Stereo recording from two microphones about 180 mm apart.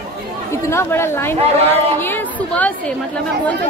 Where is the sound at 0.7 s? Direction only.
15° left (ahead or behind).